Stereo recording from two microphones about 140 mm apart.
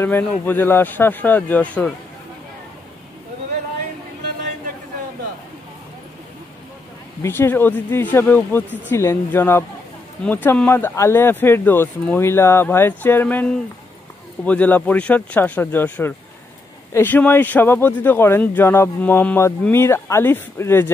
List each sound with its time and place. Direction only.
0.0 s speech: 15° left (ahead or behind)
7.2 s speech: 15° left (ahead or behind)